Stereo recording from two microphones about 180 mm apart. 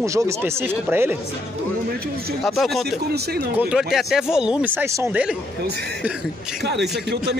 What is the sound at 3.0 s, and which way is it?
Speech, 60° right (ahead or behind).